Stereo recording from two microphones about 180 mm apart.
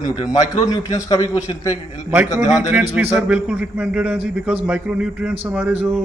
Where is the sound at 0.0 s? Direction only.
25° left (ahead or behind).